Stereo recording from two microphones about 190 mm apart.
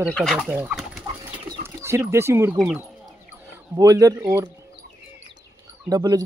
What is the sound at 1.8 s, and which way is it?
Speech, 15° right (ahead or behind).